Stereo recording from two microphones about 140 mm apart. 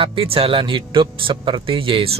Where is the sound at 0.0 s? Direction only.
40° right (ahead or behind).